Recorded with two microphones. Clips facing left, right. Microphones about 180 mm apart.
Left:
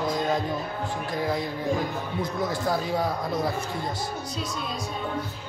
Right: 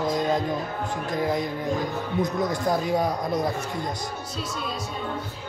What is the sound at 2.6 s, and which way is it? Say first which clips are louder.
Speech: right 3 dB; 20° right (ahead or behind).